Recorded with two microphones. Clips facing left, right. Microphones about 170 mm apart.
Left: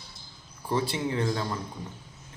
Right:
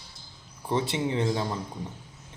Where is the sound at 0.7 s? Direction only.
20° right (ahead or behind).